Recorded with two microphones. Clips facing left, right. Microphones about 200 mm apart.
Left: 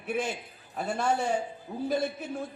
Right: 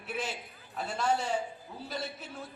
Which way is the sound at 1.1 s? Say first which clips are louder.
Left 2 dB; 60° left (ahead or behind).